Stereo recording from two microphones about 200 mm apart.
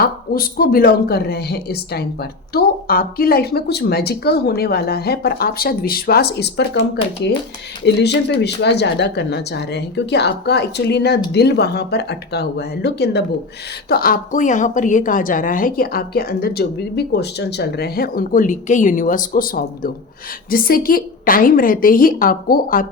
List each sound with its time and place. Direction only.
0.0 s a woman's voice: 50° left (ahead or behind)